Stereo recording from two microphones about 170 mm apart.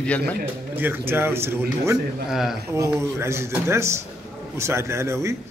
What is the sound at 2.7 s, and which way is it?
Speech, 15° right (ahead or behind).